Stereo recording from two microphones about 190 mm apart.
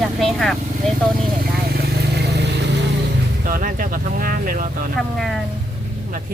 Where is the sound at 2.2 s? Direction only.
65° right (ahead or behind).